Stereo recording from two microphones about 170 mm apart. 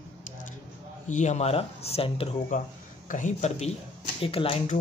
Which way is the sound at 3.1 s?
45° left (ahead or behind).